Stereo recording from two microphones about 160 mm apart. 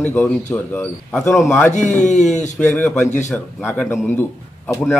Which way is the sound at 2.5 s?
5° left (ahead or behind).